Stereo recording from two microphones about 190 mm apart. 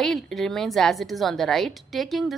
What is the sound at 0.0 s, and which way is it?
A woman's voice, centre (ahead or behind).